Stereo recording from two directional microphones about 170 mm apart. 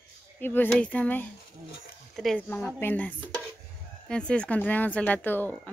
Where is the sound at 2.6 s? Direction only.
15° left (ahead or behind).